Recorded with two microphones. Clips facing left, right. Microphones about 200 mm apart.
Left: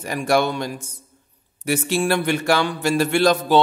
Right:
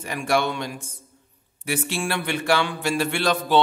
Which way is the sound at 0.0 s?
40° left (ahead or behind).